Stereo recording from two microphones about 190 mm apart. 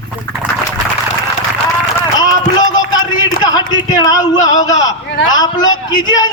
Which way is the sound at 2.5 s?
20° left (ahead or behind).